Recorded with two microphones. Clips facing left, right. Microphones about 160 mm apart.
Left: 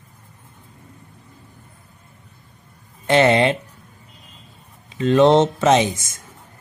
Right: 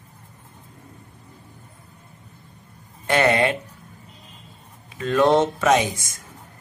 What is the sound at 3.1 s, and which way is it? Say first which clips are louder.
Speech: left 4 dB; 25° left (ahead or behind).